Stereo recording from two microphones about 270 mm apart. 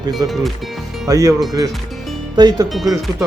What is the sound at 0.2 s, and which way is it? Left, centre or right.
Speech, centre.